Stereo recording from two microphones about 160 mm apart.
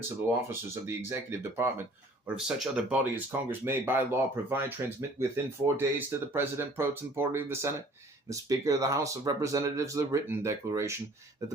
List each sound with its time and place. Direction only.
0.4 s speech: 15° right (ahead or behind)
2.2 s speech: 5° right (ahead or behind)